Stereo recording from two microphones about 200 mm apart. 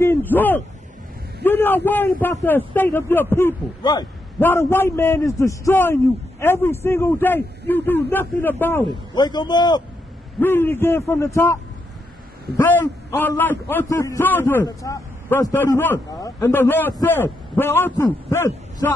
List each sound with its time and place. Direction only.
0.0 s a sound: 10° left (ahead or behind)
1.4 s a man's voice: 10° left (ahead or behind)
9.1 s a man's voice: 20° left (ahead or behind)
10.4 s a man's voice: 10° left (ahead or behind)
12.5 s a man's voice: 10° left (ahead or behind)